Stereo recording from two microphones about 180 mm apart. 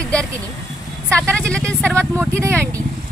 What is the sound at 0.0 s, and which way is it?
Vehicle, 5° left (ahead or behind).